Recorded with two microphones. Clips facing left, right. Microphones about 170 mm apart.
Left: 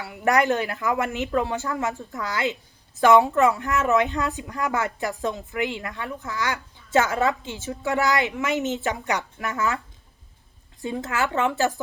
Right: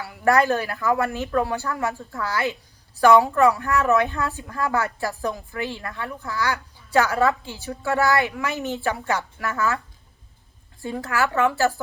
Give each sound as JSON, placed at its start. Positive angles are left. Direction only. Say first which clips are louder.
{"t": 0.0, "sound": "speech", "louder": "right 2 dB", "side_deg": 20}